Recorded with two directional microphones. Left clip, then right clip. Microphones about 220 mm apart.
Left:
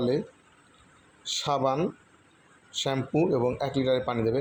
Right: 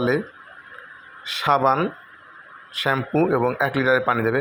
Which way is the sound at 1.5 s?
30° right (ahead or behind).